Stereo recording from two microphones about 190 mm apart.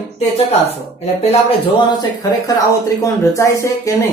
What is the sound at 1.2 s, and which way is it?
Speech, 30° left (ahead or behind).